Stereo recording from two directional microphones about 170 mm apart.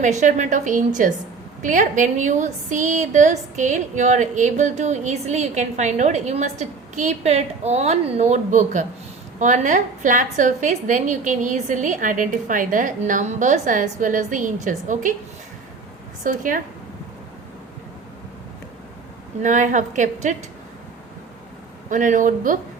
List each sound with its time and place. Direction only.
0.0 s a woman's voice: 45° right (ahead or behind)
16.2 s a woman's voice: 50° right (ahead or behind)
19.4 s a woman's voice: 45° right (ahead or behind)
21.8 s a woman's voice: 50° right (ahead or behind)